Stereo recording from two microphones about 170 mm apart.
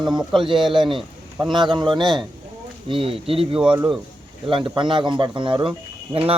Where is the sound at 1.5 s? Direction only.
25° right (ahead or behind).